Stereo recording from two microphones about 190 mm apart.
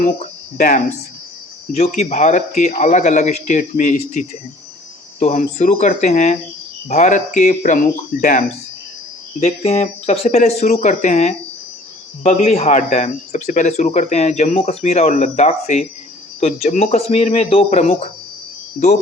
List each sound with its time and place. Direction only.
0.5 s speech: 45° left (ahead or behind)